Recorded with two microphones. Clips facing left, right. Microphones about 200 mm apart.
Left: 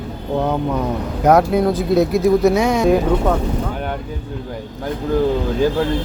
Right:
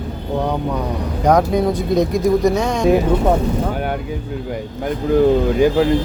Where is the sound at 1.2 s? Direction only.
5° left (ahead or behind).